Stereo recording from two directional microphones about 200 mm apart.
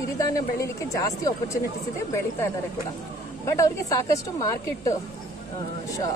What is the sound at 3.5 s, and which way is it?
Speech, 15° left (ahead or behind).